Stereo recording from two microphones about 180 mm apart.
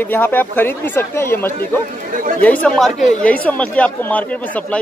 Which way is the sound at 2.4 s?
10° left (ahead or behind).